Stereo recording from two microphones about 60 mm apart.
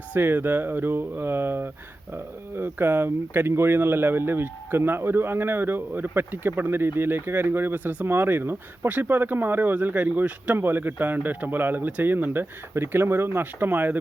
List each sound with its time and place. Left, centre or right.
0.1 s speech: right